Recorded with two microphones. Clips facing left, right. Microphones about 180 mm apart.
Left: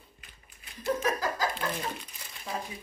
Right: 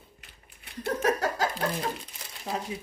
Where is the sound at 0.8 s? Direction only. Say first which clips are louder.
Right 3 dB; 70° right (ahead or behind).